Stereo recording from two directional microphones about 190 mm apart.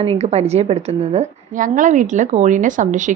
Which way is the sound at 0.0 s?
30° right (ahead or behind).